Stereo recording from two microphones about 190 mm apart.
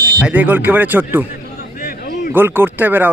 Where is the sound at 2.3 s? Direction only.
10° right (ahead or behind).